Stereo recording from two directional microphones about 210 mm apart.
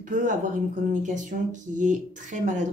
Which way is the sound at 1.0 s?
35° right (ahead or behind).